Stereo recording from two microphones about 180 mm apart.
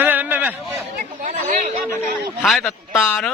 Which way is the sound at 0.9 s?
45° right (ahead or behind).